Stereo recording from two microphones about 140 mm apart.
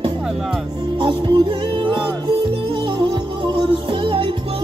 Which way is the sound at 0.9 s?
35° right (ahead or behind).